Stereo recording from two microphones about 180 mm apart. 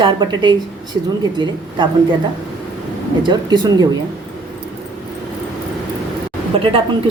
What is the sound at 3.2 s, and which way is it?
Speech, 25° right (ahead or behind).